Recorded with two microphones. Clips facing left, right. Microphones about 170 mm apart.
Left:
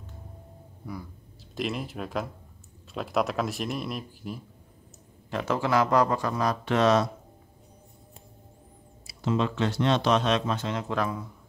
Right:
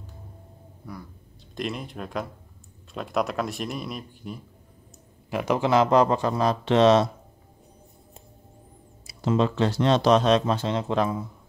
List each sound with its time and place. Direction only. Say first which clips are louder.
1.5 s speech: even; centre (ahead or behind)
5.3 s speech: right 4 dB; 15° right (ahead or behind)
9.0 s speech: right 4 dB; 40° right (ahead or behind); by 11.2 s 25° right (ahead or behind)